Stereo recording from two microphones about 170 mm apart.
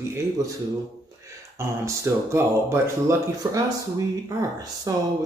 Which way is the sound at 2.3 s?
15° right (ahead or behind).